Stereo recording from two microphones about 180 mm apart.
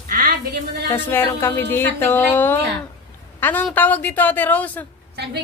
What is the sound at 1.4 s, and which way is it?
A woman's voice, 10° left (ahead or behind).